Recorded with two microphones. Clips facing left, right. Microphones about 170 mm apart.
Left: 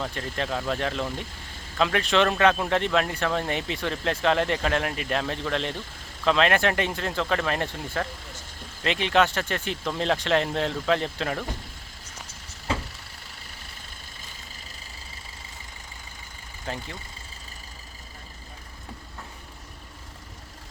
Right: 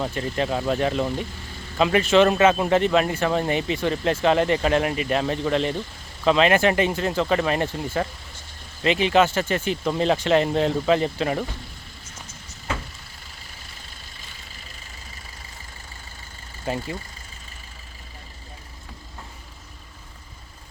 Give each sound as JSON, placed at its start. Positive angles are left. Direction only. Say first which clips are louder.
{"t": 0.0, "sound": "speech", "louder": "right 5 dB", "side_deg": -5}
{"t": 12.7, "sound": "vehicle", "louder": "left 1 dB", "side_deg": 30}
{"t": 16.6, "sound": "speech", "louder": "right 7 dB", "side_deg": -10}